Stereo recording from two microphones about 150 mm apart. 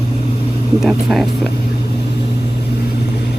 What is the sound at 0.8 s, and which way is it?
Speech, centre (ahead or behind).